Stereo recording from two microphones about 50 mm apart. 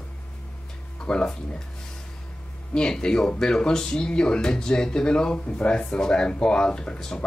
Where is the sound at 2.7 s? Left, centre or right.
Centre.